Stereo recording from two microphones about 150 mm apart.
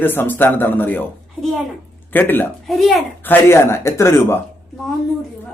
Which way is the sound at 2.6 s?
Centre (ahead or behind).